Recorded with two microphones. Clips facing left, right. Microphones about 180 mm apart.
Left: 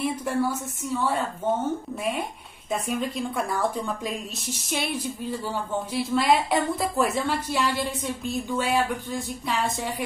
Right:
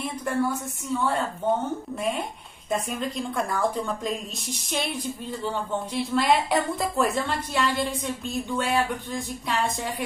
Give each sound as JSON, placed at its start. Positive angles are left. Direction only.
{"t": 0.0, "sound": "a woman's voice", "side_deg": 5}
{"t": 2.7, "sound": "a woman's voice", "side_deg": 0}